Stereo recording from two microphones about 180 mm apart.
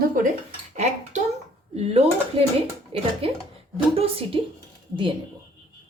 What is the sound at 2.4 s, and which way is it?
Speech, 30° right (ahead or behind).